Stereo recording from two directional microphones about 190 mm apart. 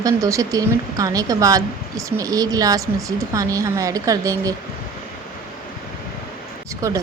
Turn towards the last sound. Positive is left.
turn(degrees=-15)  # may be behind; listen again after turning